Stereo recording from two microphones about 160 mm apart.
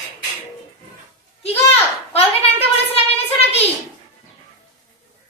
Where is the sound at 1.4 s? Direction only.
40° left (ahead or behind).